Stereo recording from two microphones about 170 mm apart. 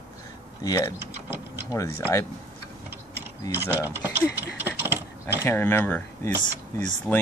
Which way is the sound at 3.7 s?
10° right (ahead or behind).